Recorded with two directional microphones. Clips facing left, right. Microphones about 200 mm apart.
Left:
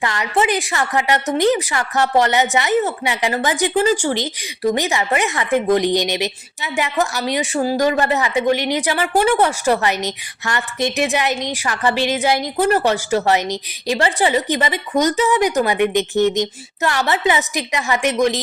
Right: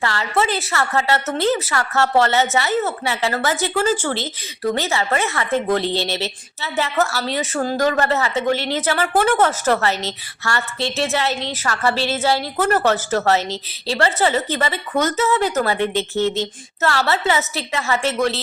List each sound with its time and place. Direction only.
0.0 s a woman's voice: 15° left (ahead or behind)